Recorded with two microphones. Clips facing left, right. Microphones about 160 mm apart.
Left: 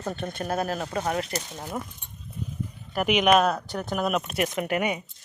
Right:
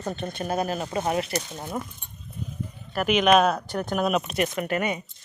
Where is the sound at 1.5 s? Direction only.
5° right (ahead or behind).